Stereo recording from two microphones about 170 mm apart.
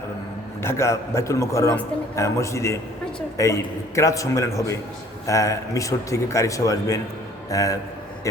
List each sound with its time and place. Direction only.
0.6 s a man's voice: 15° left (ahead or behind)